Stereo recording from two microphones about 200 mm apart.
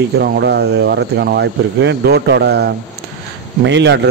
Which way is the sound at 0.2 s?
55° right (ahead or behind).